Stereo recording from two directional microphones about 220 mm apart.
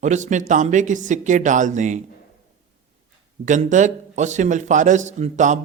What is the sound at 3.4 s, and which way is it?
A man's voice, 35° right (ahead or behind).